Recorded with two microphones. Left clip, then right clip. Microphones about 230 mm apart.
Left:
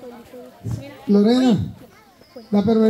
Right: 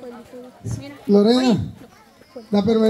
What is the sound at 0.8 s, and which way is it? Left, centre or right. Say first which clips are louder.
A man's voice: right 2 dB; right.